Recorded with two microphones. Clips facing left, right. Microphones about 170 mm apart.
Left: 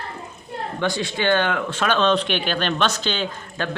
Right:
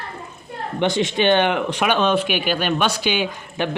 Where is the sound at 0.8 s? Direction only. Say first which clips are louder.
Right 5 dB; 20° right (ahead or behind).